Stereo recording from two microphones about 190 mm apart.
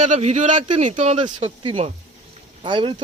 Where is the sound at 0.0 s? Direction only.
35° right (ahead or behind).